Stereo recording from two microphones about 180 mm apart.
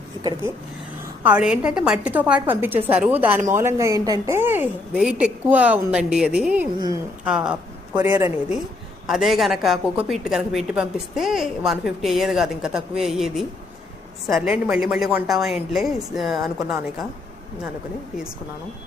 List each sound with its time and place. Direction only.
0.2 s speech: 20° right (ahead or behind)
1.2 s a woman's voice: 5° right (ahead or behind)
6.7 s speech: 20° right (ahead or behind)
7.3 s a woman's voice: 5° right (ahead or behind)
7.9 s a woman's voice: 15° right (ahead or behind)
9.0 s a woman's voice: centre (ahead or behind)